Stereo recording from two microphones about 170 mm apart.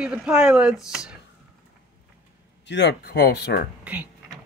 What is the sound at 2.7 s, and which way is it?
Speech, 80° left.